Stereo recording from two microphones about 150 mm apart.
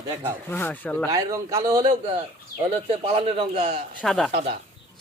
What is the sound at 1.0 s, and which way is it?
Speech, 20° right (ahead or behind).